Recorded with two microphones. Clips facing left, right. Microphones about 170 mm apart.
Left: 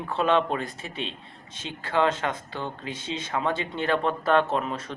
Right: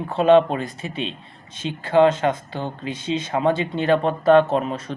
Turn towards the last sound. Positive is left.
turn(degrees=-20)  # may be behind; listen again after turning